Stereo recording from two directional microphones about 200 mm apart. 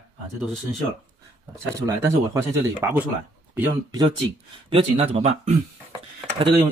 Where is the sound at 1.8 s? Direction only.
15° right (ahead or behind).